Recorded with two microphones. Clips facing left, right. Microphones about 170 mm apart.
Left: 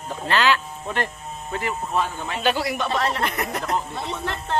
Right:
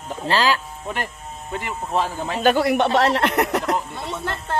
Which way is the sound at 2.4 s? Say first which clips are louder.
Right 6 dB; 55° right (ahead or behind).